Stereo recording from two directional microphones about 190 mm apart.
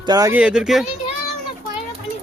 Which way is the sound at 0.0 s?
20° right (ahead or behind).